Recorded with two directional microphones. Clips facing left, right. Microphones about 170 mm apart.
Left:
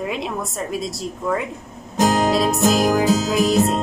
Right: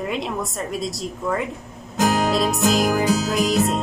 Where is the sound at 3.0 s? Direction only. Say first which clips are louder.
Left 2 dB; centre (ahead or behind).